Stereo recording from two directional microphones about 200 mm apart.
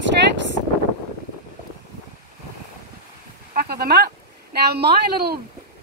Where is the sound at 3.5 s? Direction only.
50° right (ahead or behind).